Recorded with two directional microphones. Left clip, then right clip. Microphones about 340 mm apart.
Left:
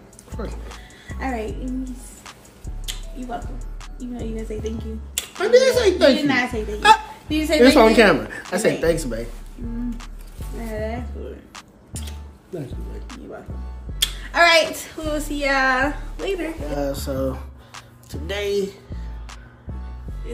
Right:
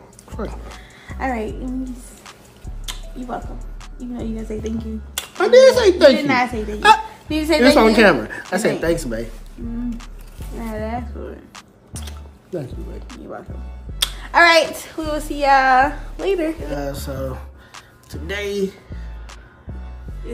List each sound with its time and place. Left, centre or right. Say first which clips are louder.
0.3 s speech: right 3 dB; centre
1.0 s a woman's voice: right 4 dB; centre
3.5 s music: right 1 dB; centre
4.5 s speech: right 2 dB; centre
6.2 s speech: right 3 dB; centre
6.8 s speech: right 2 dB; centre
7.2 s speech: right 2 dB; centre
7.5 s speech: even; centre
10.7 s speech: right 1 dB; centre
13.9 s a child's voice: right 4 dB; centre
16.7 s music: left 2 dB; centre